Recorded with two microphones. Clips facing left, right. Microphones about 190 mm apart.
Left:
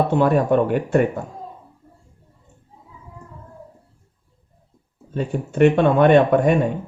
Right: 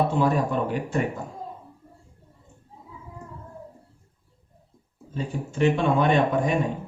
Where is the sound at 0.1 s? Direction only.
60° left (ahead or behind).